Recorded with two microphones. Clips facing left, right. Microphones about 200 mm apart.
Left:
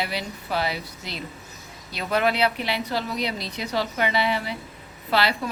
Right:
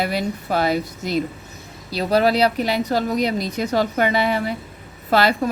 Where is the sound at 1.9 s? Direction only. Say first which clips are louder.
Right 6 dB; 35° right (ahead or behind).